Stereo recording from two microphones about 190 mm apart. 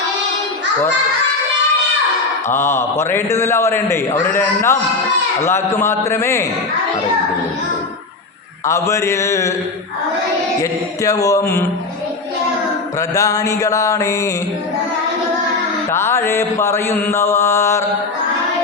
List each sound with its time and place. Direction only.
2.5 s mantra: 10° left (ahead or behind)
8.6 s mantra: 15° left (ahead or behind)
10.6 s mantra: 15° left (ahead or behind)
13.0 s mantra: 15° left (ahead or behind)
15.9 s mantra: 15° left (ahead or behind)